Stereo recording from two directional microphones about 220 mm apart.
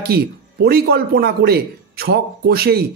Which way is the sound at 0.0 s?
45° right (ahead or behind).